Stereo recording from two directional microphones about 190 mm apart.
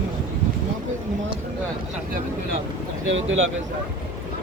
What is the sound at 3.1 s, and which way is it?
Speech, 85° right.